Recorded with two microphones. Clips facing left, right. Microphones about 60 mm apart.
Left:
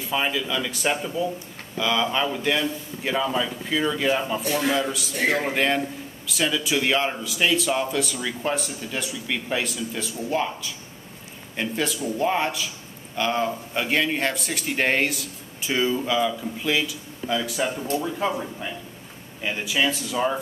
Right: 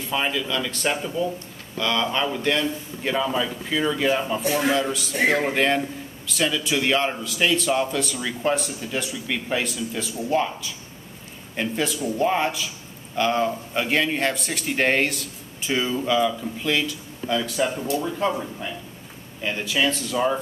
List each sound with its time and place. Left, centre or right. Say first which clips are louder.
0.0 s speech: even; centre
4.4 s a man's voice: right 2 dB; centre
4.7 s speech: right 2 dB; centre